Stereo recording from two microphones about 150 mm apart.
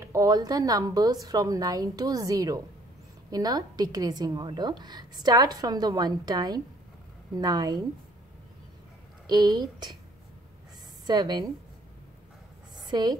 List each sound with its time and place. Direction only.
0.0 s a woman's voice: 20° right (ahead or behind)
9.3 s a woman's voice: 30° right (ahead or behind)
11.1 s a woman's voice: 30° right (ahead or behind)
12.7 s a sound: 30° right (ahead or behind)